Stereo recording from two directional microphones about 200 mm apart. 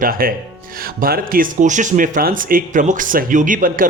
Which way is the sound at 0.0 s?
45° right (ahead or behind).